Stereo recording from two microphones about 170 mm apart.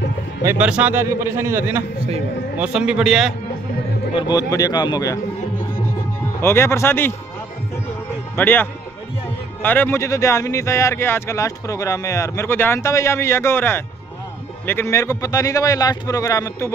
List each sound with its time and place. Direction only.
0.4 s a man's voice: 15° right (ahead or behind)
4.1 s a man's voice: 25° left (ahead or behind)
6.4 s speech: 15° left (ahead or behind)
8.4 s a man's voice: 10° left (ahead or behind)